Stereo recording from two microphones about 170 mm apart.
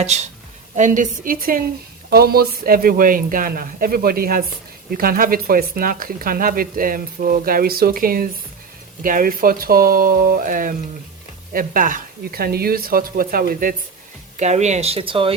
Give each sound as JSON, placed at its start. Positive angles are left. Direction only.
{"t": 0.8, "sound": "speech", "side_deg": -50}
{"t": 14.3, "sound": "speech", "side_deg": -40}